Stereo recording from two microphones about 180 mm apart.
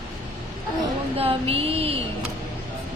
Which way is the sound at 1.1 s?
35° right (ahead or behind).